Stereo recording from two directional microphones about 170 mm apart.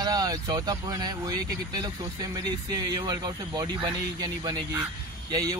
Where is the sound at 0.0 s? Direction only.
20° right (ahead or behind).